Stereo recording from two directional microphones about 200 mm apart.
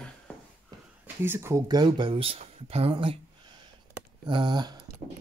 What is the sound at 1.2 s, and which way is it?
Speech, 10° right (ahead or behind).